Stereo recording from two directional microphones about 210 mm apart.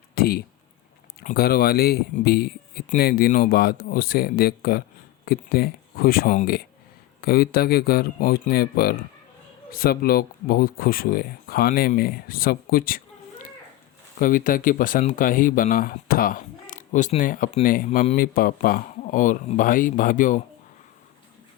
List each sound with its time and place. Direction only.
0.1 s a sound: 45° left (ahead or behind)
1.2 s speech: 45° left (ahead or behind)
14.2 s speech: 40° left (ahead or behind)